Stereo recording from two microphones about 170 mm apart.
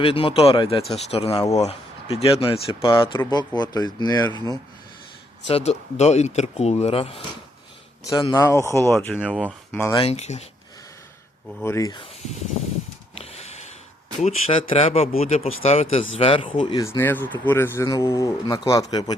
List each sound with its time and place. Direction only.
0.0 s speech: 30° left (ahead or behind)
4.3 s speech: 25° right (ahead or behind)
5.5 s speech: 40° left (ahead or behind)
8.0 s speech: 25° left (ahead or behind)
9.2 s speech: 5° right (ahead or behind)
9.9 s speech: 35° left (ahead or behind)
11.6 s speech: 15° left (ahead or behind)
13.1 s snort: 35° left (ahead or behind)
14.2 s speech: 40° left (ahead or behind)
17.0 s speech: 10° left (ahead or behind)